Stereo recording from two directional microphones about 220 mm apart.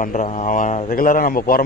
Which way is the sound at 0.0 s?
35° left (ahead or behind).